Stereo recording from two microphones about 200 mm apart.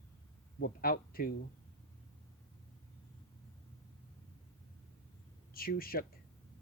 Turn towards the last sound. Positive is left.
turn(degrees=50)  # may be behind; listen again after turning